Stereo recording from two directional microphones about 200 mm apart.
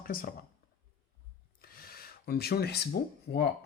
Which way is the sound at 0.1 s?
45° left (ahead or behind).